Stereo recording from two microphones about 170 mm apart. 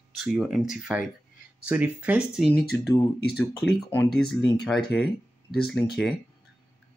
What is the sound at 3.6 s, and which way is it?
Speech, 90° left.